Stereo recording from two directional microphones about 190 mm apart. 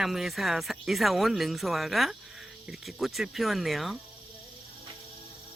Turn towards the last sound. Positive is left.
turn(degrees=0)  # may be behind; listen again after turning